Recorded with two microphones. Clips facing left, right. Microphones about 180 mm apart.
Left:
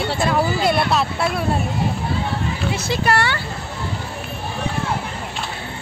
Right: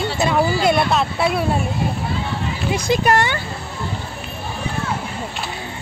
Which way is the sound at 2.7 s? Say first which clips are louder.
Right 5 dB; 15° right (ahead or behind).